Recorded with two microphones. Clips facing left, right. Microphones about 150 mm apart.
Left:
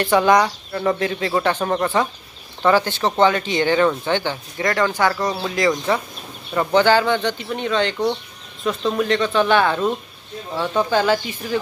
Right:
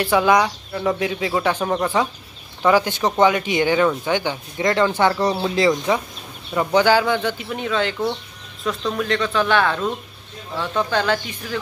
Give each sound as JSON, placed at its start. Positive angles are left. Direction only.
{"t": 0.0, "sound": "speech", "side_deg": -5}
{"t": 6.5, "sound": "speech", "side_deg": -10}